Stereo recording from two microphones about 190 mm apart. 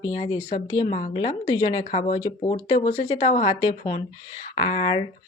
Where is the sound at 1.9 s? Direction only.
35° left (ahead or behind).